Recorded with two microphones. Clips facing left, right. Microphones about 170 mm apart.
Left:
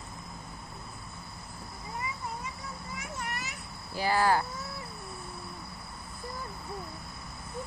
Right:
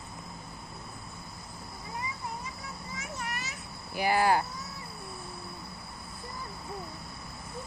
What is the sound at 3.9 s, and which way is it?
Speech, 15° right (ahead or behind).